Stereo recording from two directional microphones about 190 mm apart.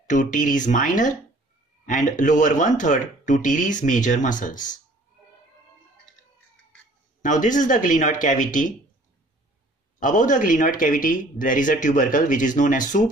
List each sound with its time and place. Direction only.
0.0 s speech: 40° left (ahead or behind)
7.2 s speech: 40° left (ahead or behind)
9.9 s speech: 45° left (ahead or behind)